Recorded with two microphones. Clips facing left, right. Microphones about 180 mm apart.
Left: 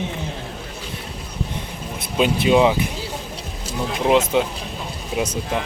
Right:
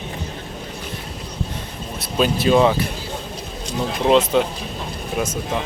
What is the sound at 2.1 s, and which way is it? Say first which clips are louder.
Speech: even; 15° left (ahead or behind).